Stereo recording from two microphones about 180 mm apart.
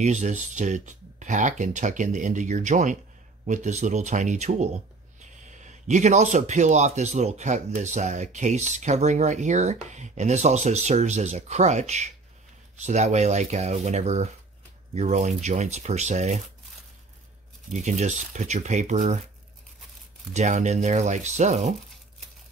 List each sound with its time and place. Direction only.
0.0 s speech: 40° right (ahead or behind)
17.6 s speech: 40° right (ahead or behind)
20.3 s speech: 40° right (ahead or behind)